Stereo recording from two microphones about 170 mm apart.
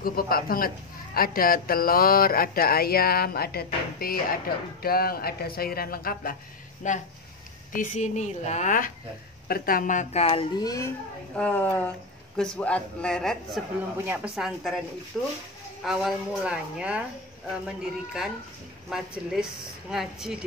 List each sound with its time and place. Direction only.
0.0 s a woman's voice: 60° left (ahead or behind)
6.8 s a woman's voice: 45° left (ahead or behind)
10.6 s a child's voice: 20° left (ahead or behind)
11.3 s speech: 10° left (ahead or behind)
14.0 s speech: 10° right (ahead or behind)